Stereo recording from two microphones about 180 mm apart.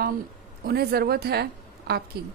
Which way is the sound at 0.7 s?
60° right (ahead or behind).